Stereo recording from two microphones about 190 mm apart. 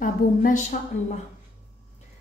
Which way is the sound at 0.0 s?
45° left (ahead or behind).